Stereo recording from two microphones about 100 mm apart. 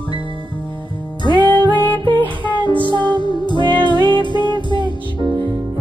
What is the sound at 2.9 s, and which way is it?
Music, 50° right (ahead or behind).